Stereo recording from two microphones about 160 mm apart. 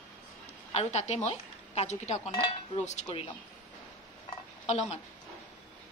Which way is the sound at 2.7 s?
45° left (ahead or behind).